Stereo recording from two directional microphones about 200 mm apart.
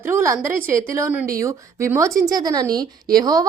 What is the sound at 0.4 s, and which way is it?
A woman's voice, 15° right (ahead or behind).